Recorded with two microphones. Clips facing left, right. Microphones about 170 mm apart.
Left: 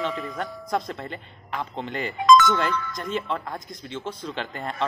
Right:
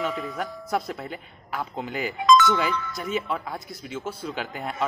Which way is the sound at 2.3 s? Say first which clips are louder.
Left 2 dB; 50° left (ahead or behind).